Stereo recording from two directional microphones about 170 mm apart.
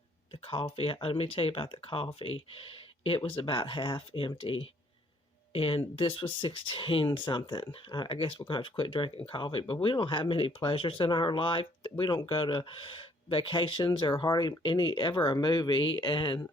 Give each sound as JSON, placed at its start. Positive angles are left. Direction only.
{"t": 0.4, "sound": "speech", "side_deg": 35}